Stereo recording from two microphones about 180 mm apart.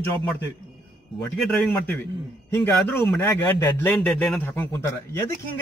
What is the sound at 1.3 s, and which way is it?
Speech, centre (ahead or behind).